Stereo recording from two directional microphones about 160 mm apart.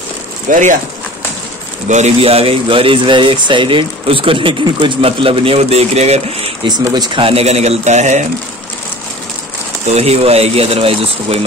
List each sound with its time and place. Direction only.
0.5 s speech: 50° right (ahead or behind)
1.9 s a man's voice: 45° right (ahead or behind)
6.8 s speech: 25° right (ahead or behind); by 8.3 s 45° right (ahead or behind)
9.8 s a man's voice: 40° right (ahead or behind)